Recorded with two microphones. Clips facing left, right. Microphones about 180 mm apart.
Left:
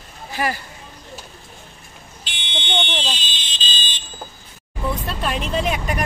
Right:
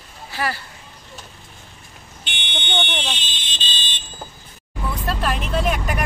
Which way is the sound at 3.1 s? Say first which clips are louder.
Left 1 dB; 60° right (ahead or behind).